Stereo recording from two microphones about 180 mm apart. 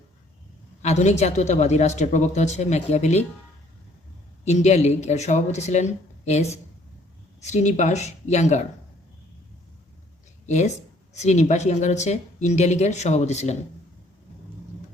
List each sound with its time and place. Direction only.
0.8 s a woman's voice: 40° left (ahead or behind)
4.4 s a woman's voice: 40° left (ahead or behind)
10.4 s a woman's voice: 40° left (ahead or behind)